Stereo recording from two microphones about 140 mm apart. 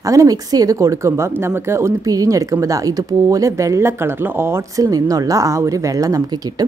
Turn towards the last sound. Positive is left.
turn(degrees=-25)  # may be behind; listen again after turning